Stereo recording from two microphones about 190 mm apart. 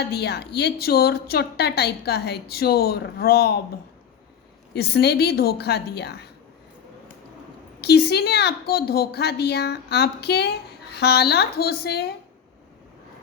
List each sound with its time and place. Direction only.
0.0 s a woman's voice: 60° left (ahead or behind)
4.7 s a woman's voice: 60° left (ahead or behind)
7.8 s a woman's voice: 60° left (ahead or behind)